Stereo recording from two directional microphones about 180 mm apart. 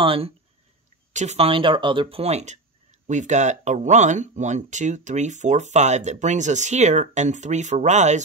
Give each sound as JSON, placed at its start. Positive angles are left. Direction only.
{"t": 0.0, "sound": "speech", "side_deg": -30}